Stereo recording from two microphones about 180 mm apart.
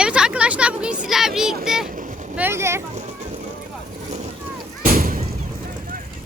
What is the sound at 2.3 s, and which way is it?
Speech, 10° right (ahead or behind).